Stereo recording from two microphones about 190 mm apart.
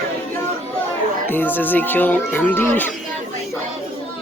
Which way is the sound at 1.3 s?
10° left (ahead or behind).